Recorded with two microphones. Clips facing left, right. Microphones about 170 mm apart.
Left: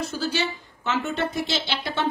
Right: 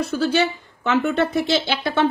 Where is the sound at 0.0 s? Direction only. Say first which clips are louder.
Right 7 dB; 60° right (ahead or behind).